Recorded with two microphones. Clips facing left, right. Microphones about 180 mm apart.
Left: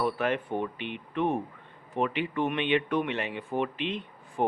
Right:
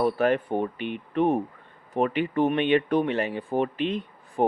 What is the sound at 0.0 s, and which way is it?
A man's voice, 40° right (ahead or behind).